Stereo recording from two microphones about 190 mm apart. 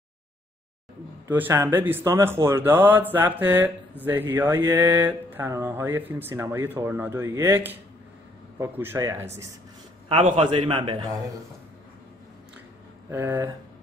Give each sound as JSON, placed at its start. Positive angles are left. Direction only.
{"t": 1.2, "sound": "speech", "side_deg": -10}
{"t": 10.0, "sound": "a man's voice", "side_deg": -30}
{"t": 13.1, "sound": "speech", "side_deg": -15}